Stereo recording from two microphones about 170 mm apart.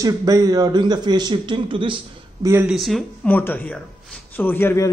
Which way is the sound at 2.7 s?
Centre (ahead or behind).